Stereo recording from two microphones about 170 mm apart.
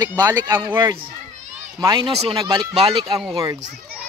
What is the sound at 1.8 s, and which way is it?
Speech, 25° right (ahead or behind).